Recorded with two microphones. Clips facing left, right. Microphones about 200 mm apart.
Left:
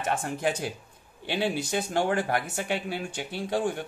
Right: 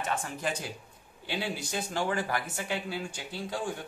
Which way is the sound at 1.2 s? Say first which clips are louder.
Left 6 dB; 60° left (ahead or behind).